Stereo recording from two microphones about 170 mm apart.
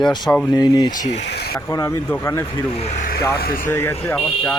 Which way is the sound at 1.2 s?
75° left (ahead or behind).